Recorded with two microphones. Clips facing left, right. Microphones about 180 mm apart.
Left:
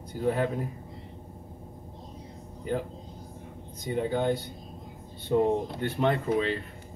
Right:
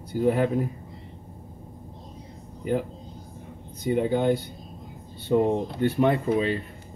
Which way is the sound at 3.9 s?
15° right (ahead or behind).